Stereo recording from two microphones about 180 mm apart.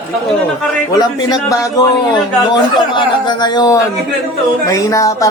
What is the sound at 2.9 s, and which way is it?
Speech, 25° left (ahead or behind).